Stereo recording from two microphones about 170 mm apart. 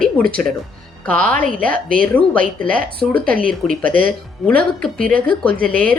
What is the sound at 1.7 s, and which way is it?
A woman's voice, 55° right (ahead or behind).